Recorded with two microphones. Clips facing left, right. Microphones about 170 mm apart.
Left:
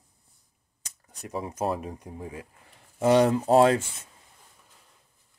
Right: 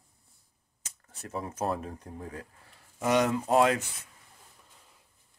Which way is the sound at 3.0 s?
30° left (ahead or behind).